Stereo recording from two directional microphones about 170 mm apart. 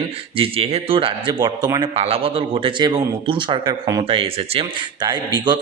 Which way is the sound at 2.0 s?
35° right (ahead or behind).